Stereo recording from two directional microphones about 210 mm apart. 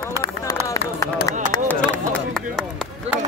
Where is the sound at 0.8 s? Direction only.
50° left (ahead or behind).